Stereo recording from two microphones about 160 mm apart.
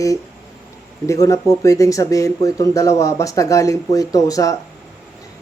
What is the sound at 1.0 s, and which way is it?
Speech, 20° left (ahead or behind).